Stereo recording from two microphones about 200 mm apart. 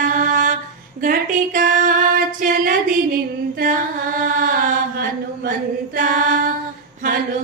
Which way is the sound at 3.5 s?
40° right (ahead or behind).